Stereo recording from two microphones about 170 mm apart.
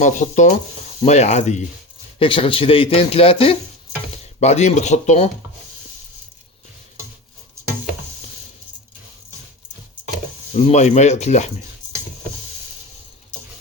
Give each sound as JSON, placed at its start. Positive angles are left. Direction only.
{"t": 0.0, "sound": "a man's voice", "side_deg": 45}
{"t": 10.5, "sound": "speech", "side_deg": 45}